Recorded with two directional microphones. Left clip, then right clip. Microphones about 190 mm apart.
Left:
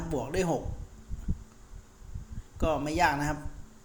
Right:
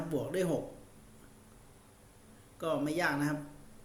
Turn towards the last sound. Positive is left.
turn(degrees=25)  # may be behind; listen again after turning